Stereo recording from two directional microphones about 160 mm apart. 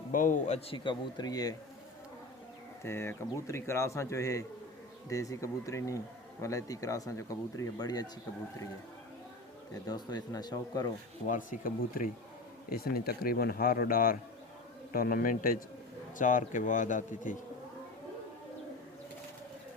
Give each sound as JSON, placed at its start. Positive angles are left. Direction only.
{"t": 0.1, "sound": "speech", "side_deg": 55}
{"t": 0.9, "sound": "speech", "side_deg": 25}
{"t": 2.8, "sound": "speech", "side_deg": 15}
{"t": 9.8, "sound": "speech", "side_deg": 25}
{"t": 11.3, "sound": "speech", "side_deg": 55}
{"t": 12.7, "sound": "speech", "side_deg": 70}